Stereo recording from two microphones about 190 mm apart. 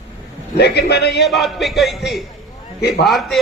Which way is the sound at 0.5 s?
60° left (ahead or behind).